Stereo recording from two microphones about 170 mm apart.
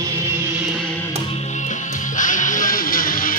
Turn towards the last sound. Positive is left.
turn(degrees=55)  # may be behind; listen again after turning